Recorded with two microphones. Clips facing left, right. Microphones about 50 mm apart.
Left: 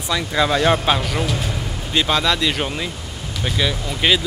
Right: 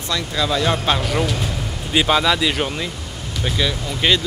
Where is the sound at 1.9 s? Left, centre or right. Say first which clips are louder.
Right 2 dB; centre.